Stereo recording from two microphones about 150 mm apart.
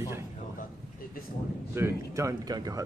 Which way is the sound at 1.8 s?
20° right (ahead or behind).